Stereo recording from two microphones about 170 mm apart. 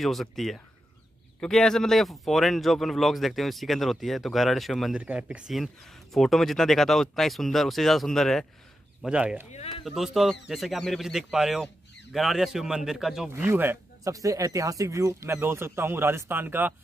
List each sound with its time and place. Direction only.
0.0 s speech: centre (ahead or behind)
9.5 s speech: 40° left (ahead or behind)
9.8 s speech: centre (ahead or behind)
13.3 s speech: 15° right (ahead or behind)